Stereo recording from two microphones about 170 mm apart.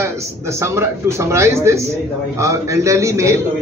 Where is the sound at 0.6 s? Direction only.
15° right (ahead or behind).